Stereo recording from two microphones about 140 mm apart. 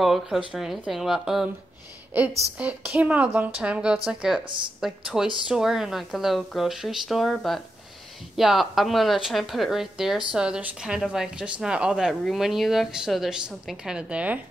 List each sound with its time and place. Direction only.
0.0 s a woman's voice: centre (ahead or behind)
2.5 s a woman's voice: 10° right (ahead or behind)
4.5 s speech: 35° right (ahead or behind)
4.7 s a woman's voice: 5° right (ahead or behind)